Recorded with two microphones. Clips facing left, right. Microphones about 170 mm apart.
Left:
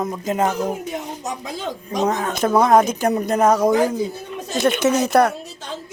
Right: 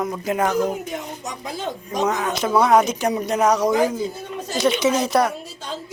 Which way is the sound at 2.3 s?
50° left (ahead or behind).